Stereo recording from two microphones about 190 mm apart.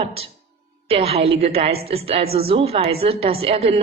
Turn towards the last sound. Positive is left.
turn(degrees=-30)  # may be behind; listen again after turning